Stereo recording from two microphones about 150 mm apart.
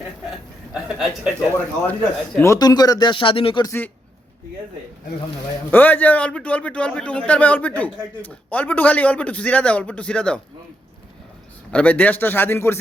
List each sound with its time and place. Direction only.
0.3 s speech: 5° right (ahead or behind)
1.9 s speech: 15° left (ahead or behind); by 3.6 s 35° left (ahead or behind)
3.6 s a man's voice: 15° left (ahead or behind)
5.7 s a man's voice: 10° left (ahead or behind)
11.7 s a man's voice: 10° left (ahead or behind)